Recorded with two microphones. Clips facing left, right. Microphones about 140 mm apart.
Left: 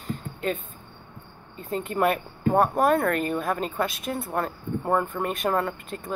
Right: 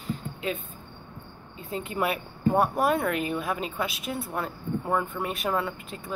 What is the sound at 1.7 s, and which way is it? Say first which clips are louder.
Speech: left 5 dB; 45° left (ahead or behind).